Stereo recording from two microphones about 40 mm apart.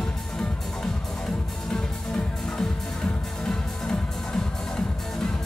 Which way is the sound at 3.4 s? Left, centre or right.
Centre.